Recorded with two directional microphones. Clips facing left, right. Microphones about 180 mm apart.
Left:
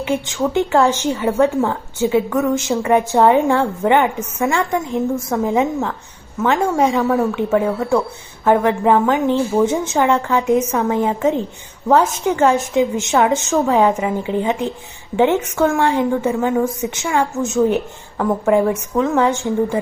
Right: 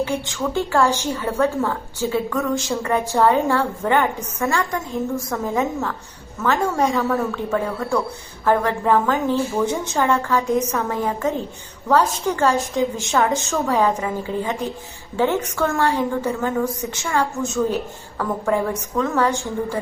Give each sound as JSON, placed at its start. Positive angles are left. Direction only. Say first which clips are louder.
{"t": 0.0, "sound": "a woman's voice", "louder": "left 4 dB", "side_deg": 20}